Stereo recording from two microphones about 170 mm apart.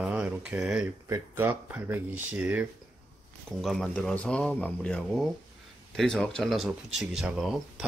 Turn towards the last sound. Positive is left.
turn(degrees=-5)  # may be behind; listen again after turning